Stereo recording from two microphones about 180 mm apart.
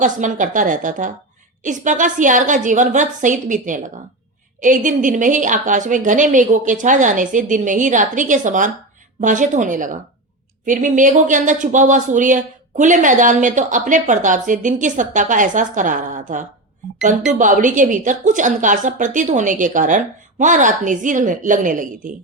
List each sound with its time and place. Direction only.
0.0 s speech: 45° right (ahead or behind)